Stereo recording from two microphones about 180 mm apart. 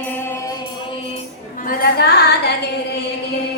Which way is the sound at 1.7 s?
55° left (ahead or behind).